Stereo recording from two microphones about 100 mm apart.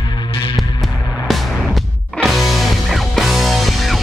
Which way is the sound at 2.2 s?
Centre (ahead or behind).